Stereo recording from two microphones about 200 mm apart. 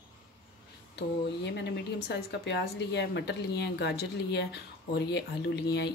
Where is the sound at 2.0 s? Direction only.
60° left (ahead or behind).